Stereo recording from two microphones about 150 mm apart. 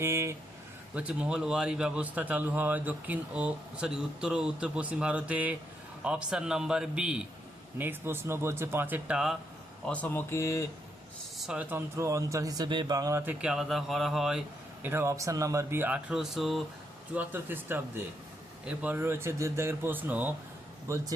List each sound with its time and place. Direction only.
0.0 s a man's voice: 15° right (ahead or behind)
0.9 s a man's voice: 5° right (ahead or behind)
9.8 s speech: 10° left (ahead or behind)
11.3 s speech: 5° right (ahead or behind)
13.4 s a man's voice: 5° right (ahead or behind)
17.2 s a man's voice: 15° right (ahead or behind)